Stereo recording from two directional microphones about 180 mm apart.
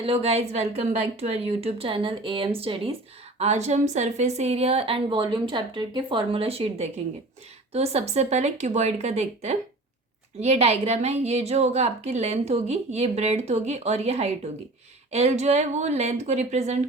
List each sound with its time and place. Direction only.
0.0 s a woman's voice: 35° right (ahead or behind)